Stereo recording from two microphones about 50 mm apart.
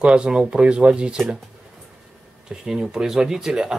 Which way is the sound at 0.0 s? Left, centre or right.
Centre.